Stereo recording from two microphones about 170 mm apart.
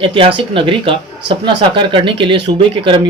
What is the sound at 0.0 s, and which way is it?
A man's voice, 30° right (ahead or behind).